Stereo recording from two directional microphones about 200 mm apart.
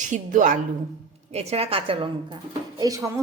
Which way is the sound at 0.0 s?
40° right (ahead or behind).